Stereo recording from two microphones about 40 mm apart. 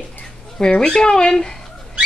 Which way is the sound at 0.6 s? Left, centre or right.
Centre.